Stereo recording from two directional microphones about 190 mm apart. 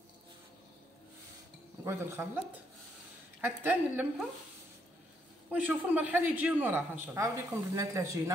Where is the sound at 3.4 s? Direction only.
10° right (ahead or behind).